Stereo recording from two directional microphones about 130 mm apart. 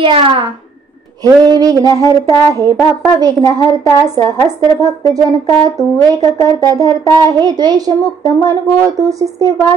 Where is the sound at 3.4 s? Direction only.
30° left (ahead or behind).